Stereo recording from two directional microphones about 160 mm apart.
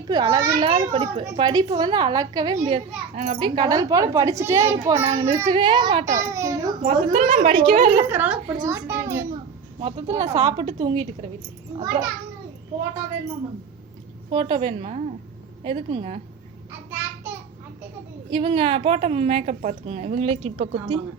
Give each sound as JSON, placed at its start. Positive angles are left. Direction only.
{"t": 0.1, "sound": "a child's voice", "side_deg": -25}
{"t": 2.6, "sound": "a child's voice", "side_deg": -40}
{"t": 5.0, "sound": "a woman's voice", "side_deg": -40}
{"t": 5.5, "sound": "a child's voice", "side_deg": -30}
{"t": 6.1, "sound": "a child's voice", "side_deg": -20}
{"t": 6.8, "sound": "a woman's voice", "side_deg": -40}
{"t": 8.1, "sound": "a child's voice", "side_deg": -10}
{"t": 8.4, "sound": "a child's voice", "side_deg": -25}
{"t": 9.8, "sound": "speech", "side_deg": -40}
{"t": 10.8, "sound": "a child's voice", "side_deg": -30}
{"t": 14.3, "sound": "a woman's voice", "side_deg": -30}
{"t": 14.7, "sound": "a woman's voice", "side_deg": -45}
{"t": 16.9, "sound": "a sound", "side_deg": -15}
{"t": 18.3, "sound": "a woman's voice", "side_deg": -35}